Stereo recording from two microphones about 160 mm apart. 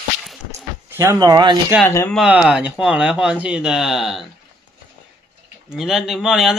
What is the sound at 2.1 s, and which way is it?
Speech, 5° right (ahead or behind).